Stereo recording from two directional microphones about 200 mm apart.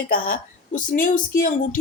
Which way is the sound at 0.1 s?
45° left (ahead or behind).